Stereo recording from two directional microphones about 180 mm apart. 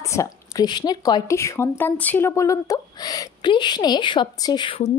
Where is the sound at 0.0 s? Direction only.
15° left (ahead or behind).